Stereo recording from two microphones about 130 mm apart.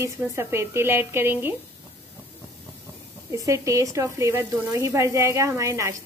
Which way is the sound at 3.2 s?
25° right (ahead or behind).